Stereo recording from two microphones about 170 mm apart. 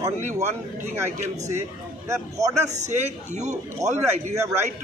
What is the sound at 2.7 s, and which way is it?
A man's voice, 45° right (ahead or behind).